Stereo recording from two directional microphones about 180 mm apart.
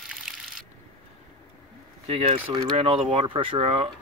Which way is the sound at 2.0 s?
35° right (ahead or behind).